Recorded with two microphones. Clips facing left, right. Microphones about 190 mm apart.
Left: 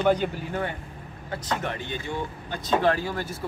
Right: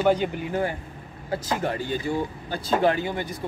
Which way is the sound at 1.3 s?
30° right (ahead or behind).